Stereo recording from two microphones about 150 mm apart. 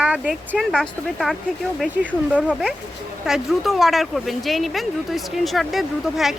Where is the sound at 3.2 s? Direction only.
Centre (ahead or behind).